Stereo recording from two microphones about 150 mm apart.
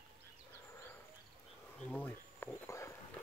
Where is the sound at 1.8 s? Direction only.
10° left (ahead or behind).